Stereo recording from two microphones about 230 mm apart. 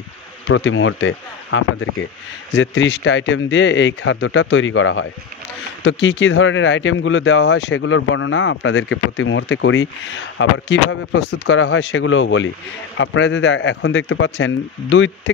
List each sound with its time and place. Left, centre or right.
0.5 s speech: left